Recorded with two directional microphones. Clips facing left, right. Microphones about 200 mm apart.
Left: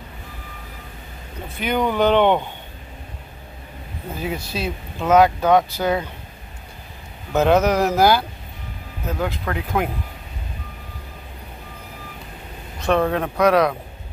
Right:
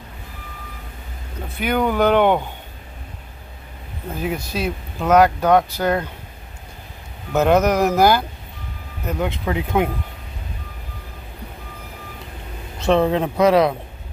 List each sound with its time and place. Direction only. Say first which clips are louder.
1.6 s speech: right 1 dB; 10° right (ahead or behind)
4.2 s speech: right 2 dB; 10° right (ahead or behind)
5.0 s speech: even; 5° left (ahead or behind)
7.3 s speech: right 1 dB; 10° right (ahead or behind)
9.2 s speech: right 3 dB; 20° right (ahead or behind)
12.7 s speech: right 2 dB; 25° right (ahead or behind)